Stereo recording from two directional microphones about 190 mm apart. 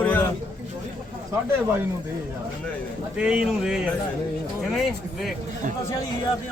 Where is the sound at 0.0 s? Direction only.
10° left (ahead or behind).